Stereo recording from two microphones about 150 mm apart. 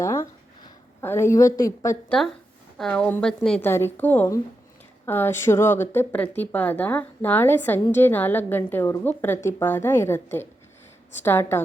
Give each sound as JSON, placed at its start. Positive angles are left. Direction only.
{"t": 0.0, "sound": "a sound", "side_deg": 20}
{"t": 2.0, "sound": "a woman's voice", "side_deg": 5}
{"t": 3.7, "sound": "speech", "side_deg": 15}